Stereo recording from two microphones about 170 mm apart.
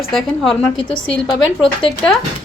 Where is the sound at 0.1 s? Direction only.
Centre (ahead or behind).